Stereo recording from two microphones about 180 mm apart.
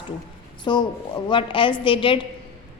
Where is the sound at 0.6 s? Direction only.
25° left (ahead or behind).